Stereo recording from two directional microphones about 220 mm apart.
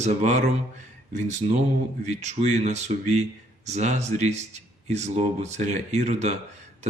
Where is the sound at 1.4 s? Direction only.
25° right (ahead or behind).